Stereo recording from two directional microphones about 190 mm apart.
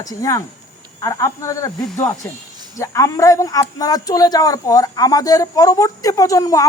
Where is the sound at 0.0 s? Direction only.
20° left (ahead or behind).